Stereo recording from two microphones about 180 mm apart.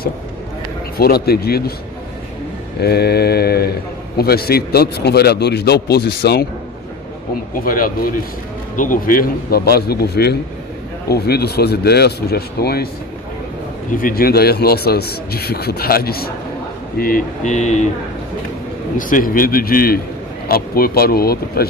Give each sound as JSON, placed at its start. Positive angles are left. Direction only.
{"t": 0.9, "sound": "speech", "side_deg": 60}
{"t": 2.8, "sound": "speech", "side_deg": 60}
{"t": 7.5, "sound": "a man's voice", "side_deg": 50}
{"t": 13.9, "sound": "speech", "side_deg": 55}
{"t": 17.0, "sound": "a man's voice", "side_deg": 45}
{"t": 18.9, "sound": "a man's voice", "side_deg": 50}